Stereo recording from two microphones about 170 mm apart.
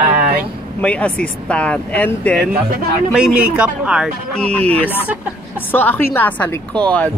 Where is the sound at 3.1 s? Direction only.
5° right (ahead or behind).